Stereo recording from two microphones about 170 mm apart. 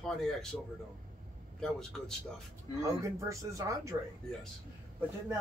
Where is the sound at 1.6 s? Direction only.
5° left (ahead or behind).